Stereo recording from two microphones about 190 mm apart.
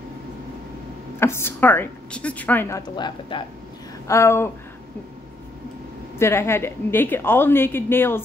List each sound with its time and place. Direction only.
1.2 s a woman's voice: 15° left (ahead or behind)
3.0 s speech: 25° left (ahead or behind)
4.1 s a woman's voice: 15° left (ahead or behind)
6.1 s a woman's voice: 15° left (ahead or behind)